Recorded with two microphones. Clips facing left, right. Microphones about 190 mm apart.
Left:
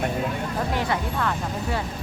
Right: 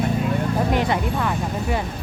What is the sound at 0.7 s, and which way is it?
Speech, 20° right (ahead or behind).